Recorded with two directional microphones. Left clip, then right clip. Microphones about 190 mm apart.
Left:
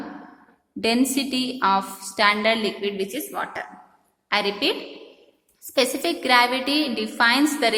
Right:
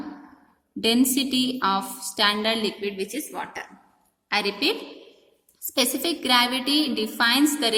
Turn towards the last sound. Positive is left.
turn(degrees=-20)  # may be behind; listen again after turning